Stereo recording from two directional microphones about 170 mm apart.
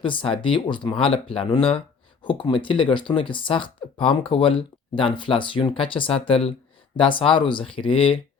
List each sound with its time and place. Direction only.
0.0 s speech: 30° left (ahead or behind)